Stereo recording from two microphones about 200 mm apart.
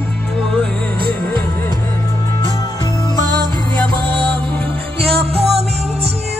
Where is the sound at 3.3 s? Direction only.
20° right (ahead or behind).